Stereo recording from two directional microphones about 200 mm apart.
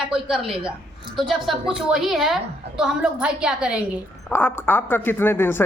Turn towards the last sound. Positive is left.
turn(degrees=10)  # may be behind; listen again after turning